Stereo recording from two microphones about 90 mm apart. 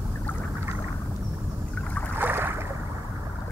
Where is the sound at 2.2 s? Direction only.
25° right (ahead or behind).